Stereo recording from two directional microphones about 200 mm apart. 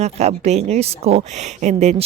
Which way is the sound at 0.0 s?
35° right (ahead or behind).